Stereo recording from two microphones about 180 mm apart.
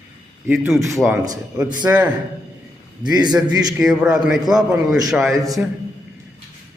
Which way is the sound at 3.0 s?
25° right (ahead or behind).